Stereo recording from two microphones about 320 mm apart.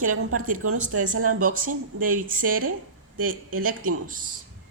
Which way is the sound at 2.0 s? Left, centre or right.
Right.